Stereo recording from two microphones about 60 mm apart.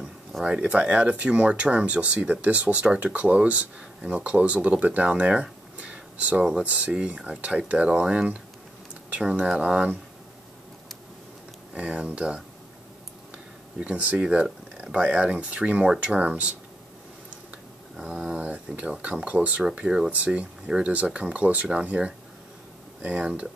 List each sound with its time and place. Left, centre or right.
0.5 s speech: centre
11.7 s speech: centre
13.7 s speech: right
18.8 s speech: right